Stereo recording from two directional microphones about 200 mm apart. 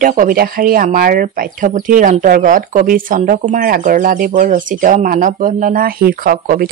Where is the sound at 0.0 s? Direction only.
45° right (ahead or behind).